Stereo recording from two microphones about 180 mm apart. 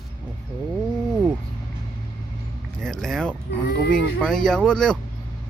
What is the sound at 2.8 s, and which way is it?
Speech, 5° left (ahead or behind).